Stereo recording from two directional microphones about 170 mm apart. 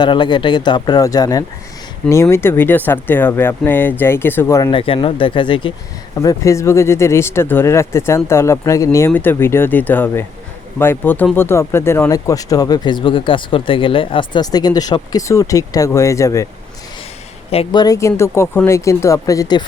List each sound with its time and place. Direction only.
0.0 s speech: 25° left (ahead or behind)
4.8 s speech: 30° left (ahead or behind)
6.1 s speech: 15° left (ahead or behind)
17.7 s speech: 25° left (ahead or behind)